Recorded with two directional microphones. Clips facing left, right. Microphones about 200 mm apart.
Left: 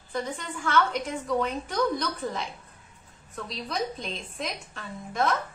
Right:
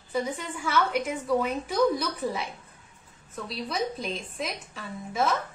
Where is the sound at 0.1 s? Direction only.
10° right (ahead or behind).